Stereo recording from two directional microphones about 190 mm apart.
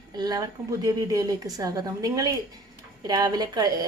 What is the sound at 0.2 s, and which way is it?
Speech, 20° right (ahead or behind).